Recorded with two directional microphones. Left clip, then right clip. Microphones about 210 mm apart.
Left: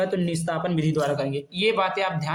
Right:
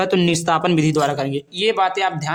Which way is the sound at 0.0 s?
45° right (ahead or behind).